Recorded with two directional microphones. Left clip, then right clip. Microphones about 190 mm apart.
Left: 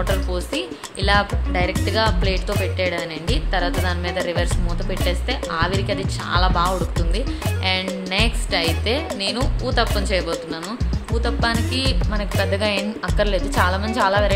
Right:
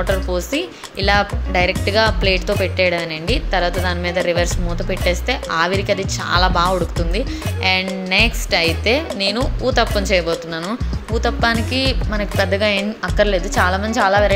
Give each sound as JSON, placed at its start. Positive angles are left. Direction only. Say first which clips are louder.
{"t": 0.3, "sound": "speech", "louder": "right 4 dB", "side_deg": -10}